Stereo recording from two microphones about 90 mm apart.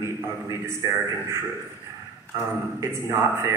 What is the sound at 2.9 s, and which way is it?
Speech, 30° right (ahead or behind).